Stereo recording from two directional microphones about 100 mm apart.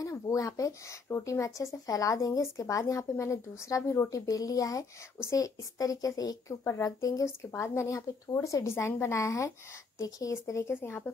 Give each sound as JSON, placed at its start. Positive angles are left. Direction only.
{"t": 0.0, "sound": "speech", "side_deg": 35}